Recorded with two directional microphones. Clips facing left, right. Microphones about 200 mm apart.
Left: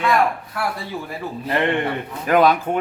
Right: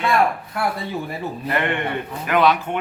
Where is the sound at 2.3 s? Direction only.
40° left (ahead or behind).